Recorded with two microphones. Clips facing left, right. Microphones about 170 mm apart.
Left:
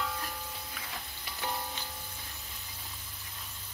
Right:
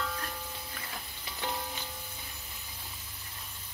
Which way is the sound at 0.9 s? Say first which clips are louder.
Even; 15° right (ahead or behind).